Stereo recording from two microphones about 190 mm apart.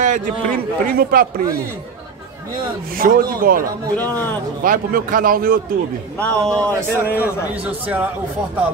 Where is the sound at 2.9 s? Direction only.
50° right (ahead or behind).